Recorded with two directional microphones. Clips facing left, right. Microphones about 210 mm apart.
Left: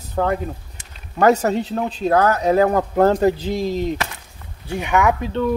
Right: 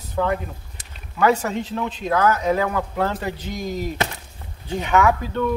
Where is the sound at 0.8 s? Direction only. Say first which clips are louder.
Even; 35° right (ahead or behind).